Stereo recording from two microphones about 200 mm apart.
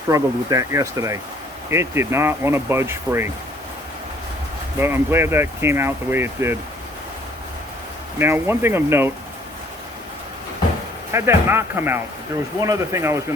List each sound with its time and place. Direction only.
0.1 s speech: 15° right (ahead or behind)
4.8 s speech: 10° right (ahead or behind)
8.2 s speech: 10° right (ahead or behind)
11.1 s speech: 10° right (ahead or behind)